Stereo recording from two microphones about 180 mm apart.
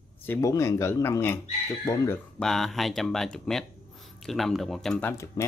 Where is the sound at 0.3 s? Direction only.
15° left (ahead or behind).